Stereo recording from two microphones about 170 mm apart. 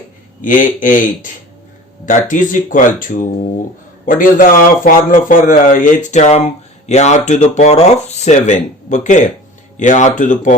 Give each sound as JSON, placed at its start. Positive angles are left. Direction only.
{"t": 0.4, "sound": "a man's voice", "side_deg": 50}